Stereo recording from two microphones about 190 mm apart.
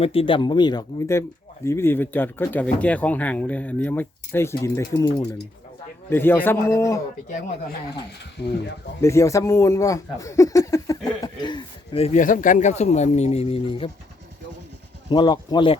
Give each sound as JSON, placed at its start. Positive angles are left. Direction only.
{"t": 0.0, "sound": "speech", "side_deg": 30}
{"t": 9.0, "sound": "speech", "side_deg": 15}
{"t": 15.1, "sound": "speech", "side_deg": 20}